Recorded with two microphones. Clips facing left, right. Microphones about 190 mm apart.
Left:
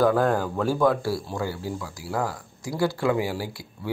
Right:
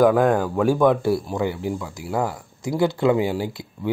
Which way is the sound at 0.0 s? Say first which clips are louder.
Right 4 dB; 15° right (ahead or behind).